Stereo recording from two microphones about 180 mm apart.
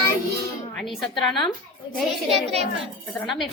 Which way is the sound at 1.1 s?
25° left (ahead or behind).